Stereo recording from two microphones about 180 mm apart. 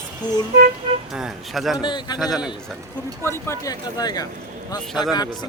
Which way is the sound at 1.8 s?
25° left (ahead or behind).